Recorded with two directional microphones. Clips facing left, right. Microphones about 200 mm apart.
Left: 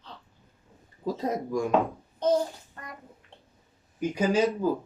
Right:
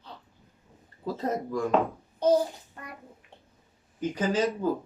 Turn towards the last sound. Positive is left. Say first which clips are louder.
# left 2 dB
turn(degrees=10)  # may be behind; listen again after turning